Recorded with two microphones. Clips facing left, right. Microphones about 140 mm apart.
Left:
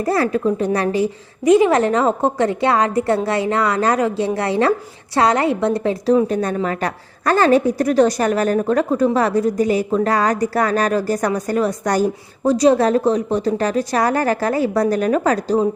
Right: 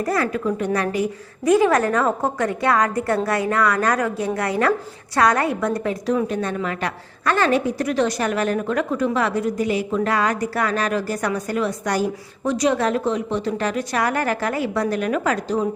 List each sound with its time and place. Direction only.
0.0 s a woman's voice: 30° left (ahead or behind)